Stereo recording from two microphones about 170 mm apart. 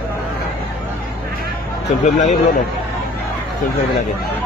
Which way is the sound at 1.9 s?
45° left (ahead or behind).